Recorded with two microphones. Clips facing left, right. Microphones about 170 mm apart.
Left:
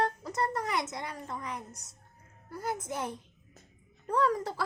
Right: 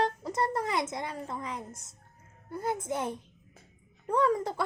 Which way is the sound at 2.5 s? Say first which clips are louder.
Right 3 dB; 25° right (ahead or behind).